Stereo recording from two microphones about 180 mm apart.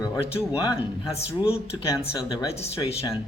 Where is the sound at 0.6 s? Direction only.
20° left (ahead or behind).